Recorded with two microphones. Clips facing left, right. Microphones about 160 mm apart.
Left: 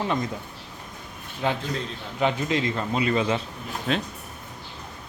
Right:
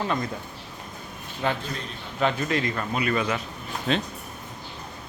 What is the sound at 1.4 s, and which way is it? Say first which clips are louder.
A man's voice: left 2 dB; 15° left (ahead or behind).